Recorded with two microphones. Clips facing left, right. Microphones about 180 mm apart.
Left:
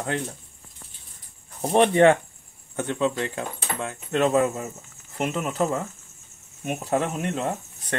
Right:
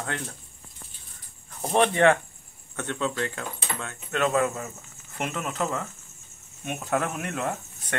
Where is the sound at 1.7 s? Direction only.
35° left (ahead or behind).